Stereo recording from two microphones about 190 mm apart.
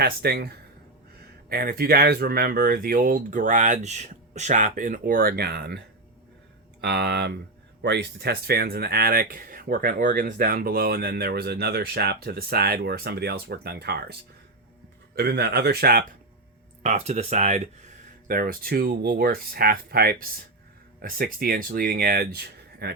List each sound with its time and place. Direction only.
0.0 s speech: 55° right (ahead or behind)
6.8 s speech: 60° right (ahead or behind)
16.8 s speech: 35° right (ahead or behind)
18.3 s speech: 50° right (ahead or behind)